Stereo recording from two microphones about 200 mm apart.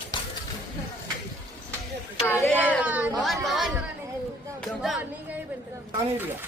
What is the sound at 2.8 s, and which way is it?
Chatter, 5° right (ahead or behind).